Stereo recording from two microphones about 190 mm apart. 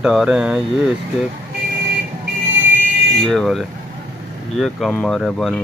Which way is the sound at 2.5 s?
80° right.